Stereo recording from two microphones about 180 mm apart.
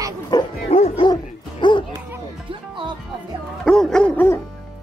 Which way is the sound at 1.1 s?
25° left (ahead or behind).